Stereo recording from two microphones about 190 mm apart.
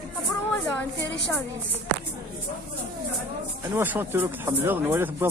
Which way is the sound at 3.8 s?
10° right (ahead or behind).